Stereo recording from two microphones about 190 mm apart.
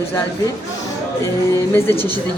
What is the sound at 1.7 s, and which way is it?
Speech, 10° left (ahead or behind).